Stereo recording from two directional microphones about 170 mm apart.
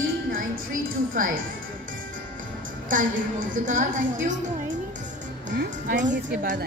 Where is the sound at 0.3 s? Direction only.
55° right (ahead or behind).